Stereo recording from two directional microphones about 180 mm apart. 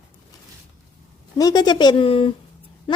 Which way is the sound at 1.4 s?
20° left (ahead or behind).